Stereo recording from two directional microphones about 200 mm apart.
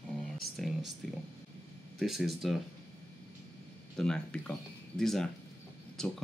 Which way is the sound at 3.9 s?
5° left (ahead or behind).